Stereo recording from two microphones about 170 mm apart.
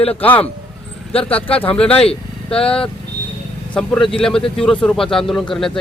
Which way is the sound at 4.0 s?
30° left (ahead or behind).